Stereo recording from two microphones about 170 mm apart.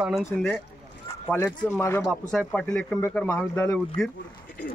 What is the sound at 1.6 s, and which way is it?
Speech, 15° left (ahead or behind).